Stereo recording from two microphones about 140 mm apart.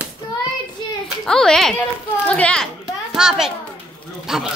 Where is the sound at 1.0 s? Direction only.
5° left (ahead or behind).